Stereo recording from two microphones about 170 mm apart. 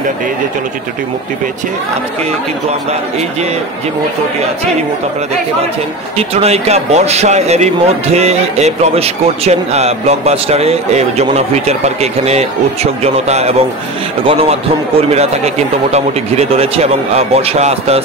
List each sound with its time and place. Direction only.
6.1 s speech: 35° right (ahead or behind)